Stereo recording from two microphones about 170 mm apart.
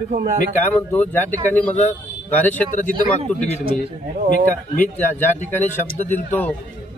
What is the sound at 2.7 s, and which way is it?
Speech, 40° left (ahead or behind).